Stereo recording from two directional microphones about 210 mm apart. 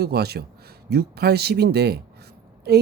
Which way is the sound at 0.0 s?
50° right (ahead or behind).